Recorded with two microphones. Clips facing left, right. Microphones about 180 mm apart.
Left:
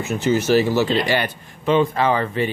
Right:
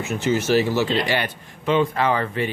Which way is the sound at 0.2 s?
40° left (ahead or behind).